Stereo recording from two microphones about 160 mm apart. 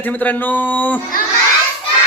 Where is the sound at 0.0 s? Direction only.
10° left (ahead or behind).